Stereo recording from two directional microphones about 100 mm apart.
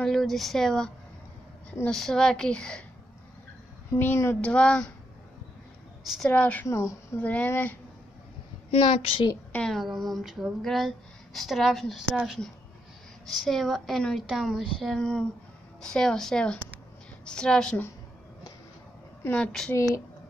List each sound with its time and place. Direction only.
0.0 s a woman's voice: 5° left (ahead or behind)
4.0 s a woman's voice: 25° left (ahead or behind)
4.4 s a woman's voice: 10° left (ahead or behind)
6.2 s a woman's voice: 15° left (ahead or behind)
6.7 s a woman's voice: 30° left (ahead or behind)
7.2 s a woman's voice: 15° left (ahead or behind)
8.6 s a woman's voice: 80° left
9.5 s speech: 5° left (ahead or behind)
13.4 s a woman's voice: centre (ahead or behind)
19.3 s a woman's voice: 10° left (ahead or behind)